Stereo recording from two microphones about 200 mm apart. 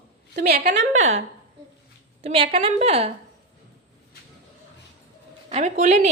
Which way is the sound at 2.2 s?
30° right (ahead or behind).